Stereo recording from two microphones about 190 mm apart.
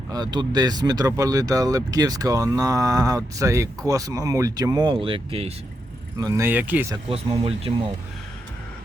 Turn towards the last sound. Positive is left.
turn(degrees=-30)  # may be behind; listen again after turning